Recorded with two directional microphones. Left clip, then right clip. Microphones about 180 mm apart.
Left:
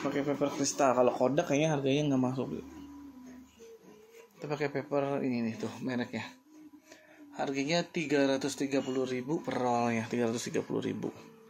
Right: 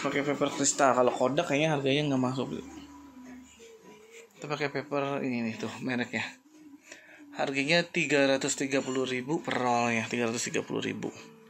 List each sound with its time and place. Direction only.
0.0 s speech: centre (ahead or behind)
1.1 s speech: 15° left (ahead or behind)
4.4 s speech: 15° left (ahead or behind); by 6.3 s centre (ahead or behind)
7.3 s speech: centre (ahead or behind)